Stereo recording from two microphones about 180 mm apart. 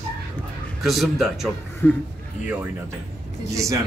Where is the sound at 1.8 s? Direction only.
15° left (ahead or behind).